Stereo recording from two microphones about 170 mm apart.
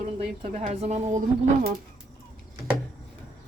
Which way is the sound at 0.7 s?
40° right (ahead or behind).